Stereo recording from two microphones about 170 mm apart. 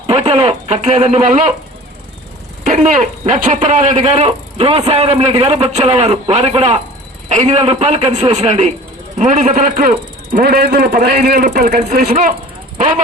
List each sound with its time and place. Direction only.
0.1 s a man's voice: 35° right (ahead or behind)
2.6 s a man's voice: 45° right (ahead or behind)